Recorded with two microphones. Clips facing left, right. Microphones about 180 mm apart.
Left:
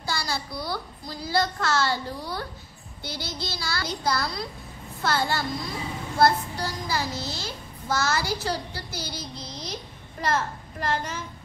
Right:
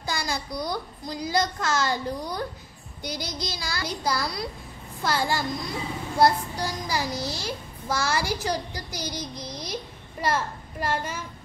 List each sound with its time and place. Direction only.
0.0 s a child's voice: 15° right (ahead or behind)